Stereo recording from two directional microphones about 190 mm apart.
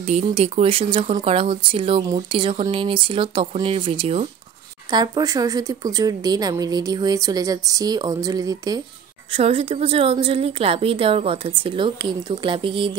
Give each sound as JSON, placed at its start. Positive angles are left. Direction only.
{"t": 0.3, "sound": "speech", "side_deg": -30}
{"t": 9.3, "sound": "speech", "side_deg": -30}